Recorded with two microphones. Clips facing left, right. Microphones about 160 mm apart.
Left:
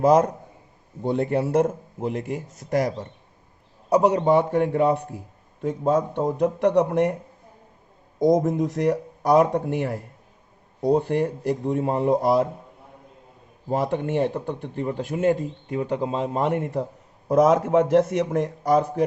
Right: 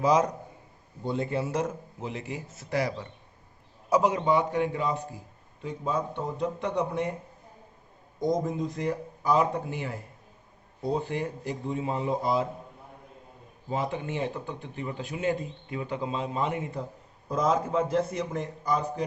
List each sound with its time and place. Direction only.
0.0 s a man's voice: 50° left (ahead or behind)
1.0 s a man's voice: 65° left (ahead or behind); by 3.1 s 45° left (ahead or behind)
4.1 s speech: 50° left (ahead or behind); by 7.2 s 80° left
8.2 s speech: 90° left; by 10.0 s 65° left (ahead or behind)
11.1 s speech: 65° left (ahead or behind)
13.7 s speech: 60° left (ahead or behind)
17.3 s speech: 85° left